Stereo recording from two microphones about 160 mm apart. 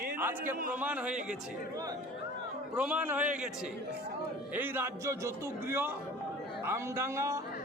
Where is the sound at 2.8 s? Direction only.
10° right (ahead or behind).